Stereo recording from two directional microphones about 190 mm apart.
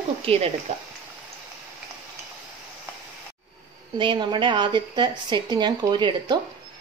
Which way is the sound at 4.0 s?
25° right (ahead or behind).